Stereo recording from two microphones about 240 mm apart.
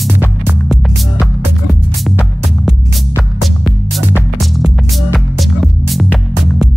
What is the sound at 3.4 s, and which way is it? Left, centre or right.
Music, centre.